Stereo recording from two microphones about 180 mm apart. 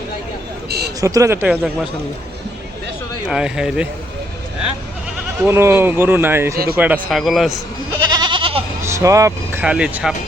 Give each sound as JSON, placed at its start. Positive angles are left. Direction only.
{"t": 1.0, "sound": "speech", "side_deg": -20}
{"t": 3.2, "sound": "a man's voice", "side_deg": -5}
{"t": 5.4, "sound": "a man's voice", "side_deg": -15}
{"t": 8.1, "sound": "goat", "side_deg": -25}
{"t": 8.8, "sound": "speech", "side_deg": -15}